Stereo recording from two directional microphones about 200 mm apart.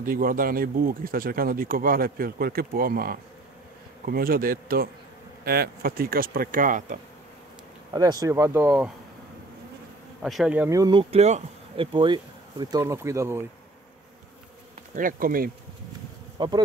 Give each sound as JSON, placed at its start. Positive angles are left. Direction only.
{"t": 0.0, "sound": "speech", "side_deg": -45}
{"t": 7.9, "sound": "speech", "side_deg": -20}
{"t": 10.2, "sound": "speech", "side_deg": 0}
{"t": 15.0, "sound": "speech", "side_deg": -45}
{"t": 16.3, "sound": "bee", "side_deg": -20}